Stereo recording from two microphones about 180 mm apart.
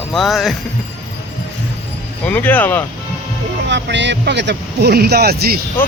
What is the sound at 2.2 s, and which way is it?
Speech, 10° left (ahead or behind).